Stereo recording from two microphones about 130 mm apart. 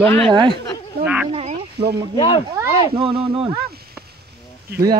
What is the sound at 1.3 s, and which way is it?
Speech, 45° right (ahead or behind).